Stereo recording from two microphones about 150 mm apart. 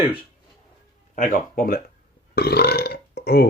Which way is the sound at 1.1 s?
65° left (ahead or behind).